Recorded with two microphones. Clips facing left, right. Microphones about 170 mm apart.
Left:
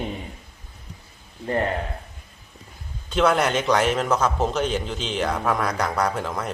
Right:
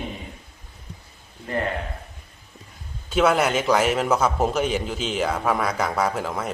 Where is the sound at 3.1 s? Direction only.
5° right (ahead or behind).